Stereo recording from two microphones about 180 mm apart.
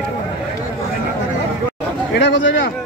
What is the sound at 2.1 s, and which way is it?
Speech, 90° left.